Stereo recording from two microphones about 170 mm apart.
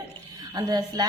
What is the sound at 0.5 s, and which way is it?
Speech, 25° right (ahead or behind).